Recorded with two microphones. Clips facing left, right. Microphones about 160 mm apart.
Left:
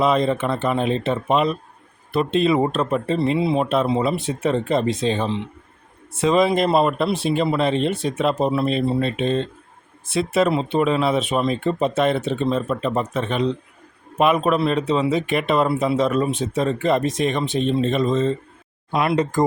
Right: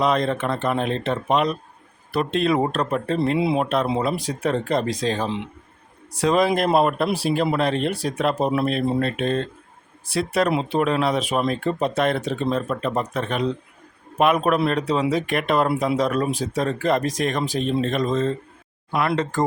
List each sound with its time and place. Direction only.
0.0 s speech: 5° left (ahead or behind)
3.3 s speech: 10° right (ahead or behind)
18.9 s speech: 20° left (ahead or behind)